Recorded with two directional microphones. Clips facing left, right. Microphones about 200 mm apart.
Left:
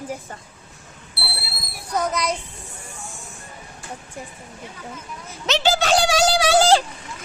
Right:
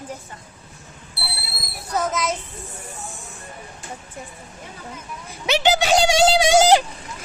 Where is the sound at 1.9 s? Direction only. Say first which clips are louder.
Even; 5° right (ahead or behind).